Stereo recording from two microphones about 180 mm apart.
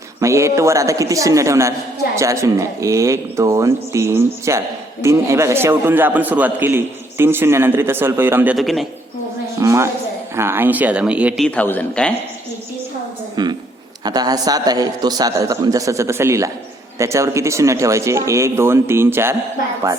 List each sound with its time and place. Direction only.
0.2 s a man's voice: 15° right (ahead or behind)
8.5 s a man's voice: centre (ahead or behind)
9.6 s a man's voice: 15° right (ahead or behind)
11.4 s speech: 10° left (ahead or behind)
13.3 s a man's voice: 25° right (ahead or behind)